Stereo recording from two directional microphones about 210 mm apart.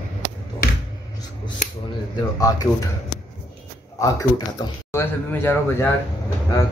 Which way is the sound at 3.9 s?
15° left (ahead or behind).